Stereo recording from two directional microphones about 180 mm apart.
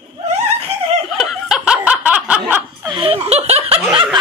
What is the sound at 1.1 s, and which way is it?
Snicker, centre (ahead or behind).